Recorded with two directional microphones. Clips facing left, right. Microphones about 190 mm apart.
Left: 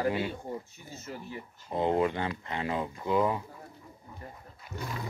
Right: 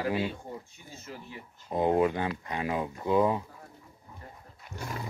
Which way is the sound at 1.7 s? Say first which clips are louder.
Right 2 dB; 15° right (ahead or behind).